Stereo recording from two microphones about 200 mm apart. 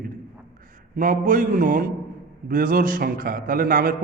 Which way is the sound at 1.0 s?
40° right (ahead or behind).